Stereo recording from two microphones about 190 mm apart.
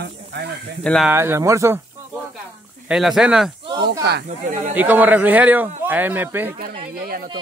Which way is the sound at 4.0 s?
60° right (ahead or behind).